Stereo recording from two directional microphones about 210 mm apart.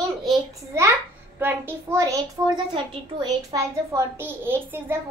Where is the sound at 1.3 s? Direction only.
10° right (ahead or behind).